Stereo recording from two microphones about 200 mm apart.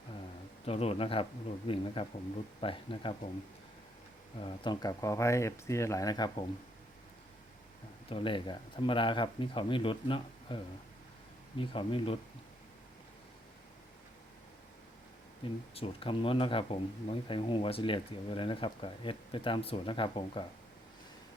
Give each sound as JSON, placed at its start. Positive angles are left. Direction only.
{"t": 0.6, "sound": "speech", "side_deg": 30}
{"t": 4.4, "sound": "speech", "side_deg": 25}
{"t": 8.1, "sound": "speech", "side_deg": 25}
{"t": 15.7, "sound": "speech", "side_deg": 30}